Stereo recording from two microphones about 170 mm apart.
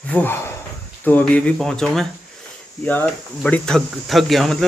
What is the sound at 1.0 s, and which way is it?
Speech, 10° left (ahead or behind).